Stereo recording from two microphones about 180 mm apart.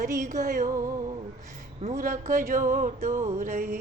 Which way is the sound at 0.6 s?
20° right (ahead or behind).